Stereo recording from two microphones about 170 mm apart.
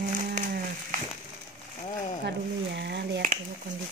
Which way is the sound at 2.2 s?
90° right.